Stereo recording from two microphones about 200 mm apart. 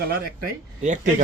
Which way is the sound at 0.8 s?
40° right (ahead or behind).